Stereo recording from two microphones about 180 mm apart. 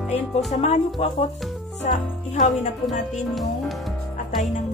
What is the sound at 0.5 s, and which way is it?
Music, 40° left (ahead or behind).